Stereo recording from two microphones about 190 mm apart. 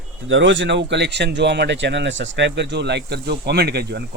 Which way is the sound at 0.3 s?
75° right (ahead or behind).